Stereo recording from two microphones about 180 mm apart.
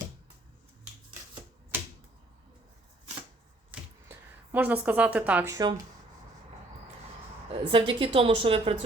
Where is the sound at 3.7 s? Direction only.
10° right (ahead or behind).